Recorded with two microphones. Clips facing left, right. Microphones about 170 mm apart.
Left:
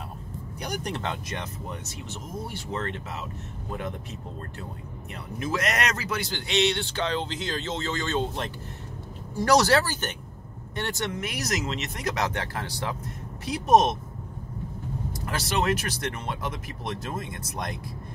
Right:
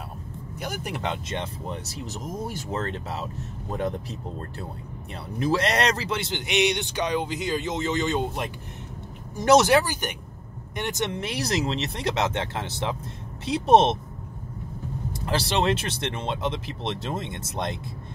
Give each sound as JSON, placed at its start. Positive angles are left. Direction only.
{"t": 0.6, "sound": "speech", "side_deg": -5}
{"t": 1.0, "sound": "speech", "side_deg": -25}
{"t": 5.4, "sound": "speech", "side_deg": -30}
{"t": 11.1, "sound": "speech", "side_deg": -30}
{"t": 15.1, "sound": "speech", "side_deg": -30}